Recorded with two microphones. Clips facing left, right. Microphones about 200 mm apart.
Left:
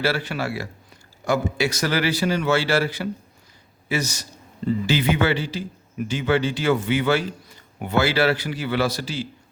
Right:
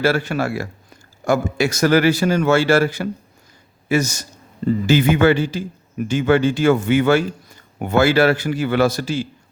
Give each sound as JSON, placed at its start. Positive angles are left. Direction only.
{"t": 0.0, "sound": "a man's voice", "side_deg": -45}